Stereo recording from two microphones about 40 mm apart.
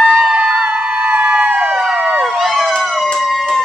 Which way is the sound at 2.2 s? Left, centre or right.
Centre.